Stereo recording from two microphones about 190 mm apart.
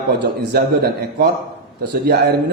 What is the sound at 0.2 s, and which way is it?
A man's voice, 60° right (ahead or behind).